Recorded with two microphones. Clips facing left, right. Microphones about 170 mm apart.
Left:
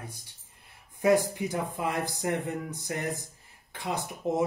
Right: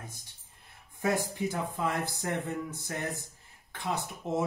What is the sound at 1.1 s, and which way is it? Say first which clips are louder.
A man's voice: left 6 dB; 15° left (ahead or behind).